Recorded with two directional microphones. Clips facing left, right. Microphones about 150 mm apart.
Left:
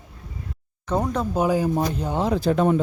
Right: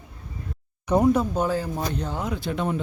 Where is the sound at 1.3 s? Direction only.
15° left (ahead or behind).